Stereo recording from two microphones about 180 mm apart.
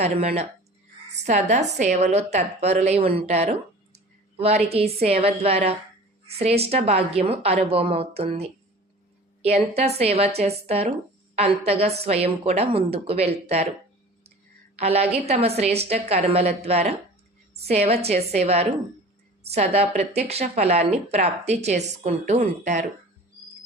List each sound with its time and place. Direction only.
0.0 s speech: 35° right (ahead or behind)
14.8 s speech: 35° right (ahead or behind)